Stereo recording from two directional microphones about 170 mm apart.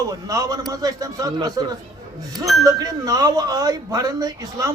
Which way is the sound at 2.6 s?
20° right (ahead or behind).